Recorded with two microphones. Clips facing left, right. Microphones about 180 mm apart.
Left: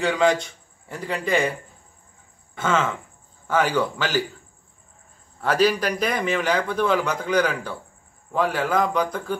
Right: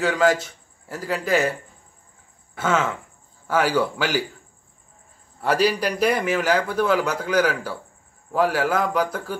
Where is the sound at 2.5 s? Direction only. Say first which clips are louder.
Even; 10° right (ahead or behind).